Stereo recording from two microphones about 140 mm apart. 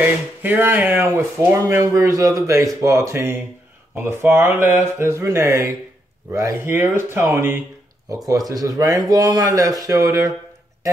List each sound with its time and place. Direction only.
0.0 s speech: 15° right (ahead or behind)